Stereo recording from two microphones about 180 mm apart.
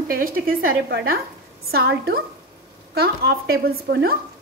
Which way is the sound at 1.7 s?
65° right (ahead or behind).